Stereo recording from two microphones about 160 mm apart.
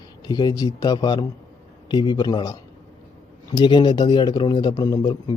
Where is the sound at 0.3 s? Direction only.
25° left (ahead or behind).